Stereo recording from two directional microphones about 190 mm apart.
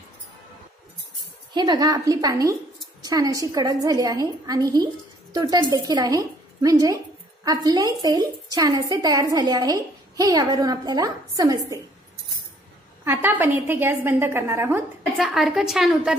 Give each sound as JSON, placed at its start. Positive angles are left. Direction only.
{"t": 1.5, "sound": "a woman's voice", "side_deg": -20}
{"t": 13.0, "sound": "a woman's voice", "side_deg": -10}
{"t": 15.1, "sound": "a woman's voice", "side_deg": 0}